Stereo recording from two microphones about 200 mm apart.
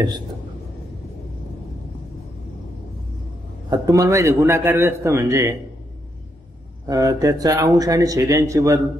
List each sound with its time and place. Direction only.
3.7 s speech: 15° right (ahead or behind)
6.9 s speech: 15° right (ahead or behind)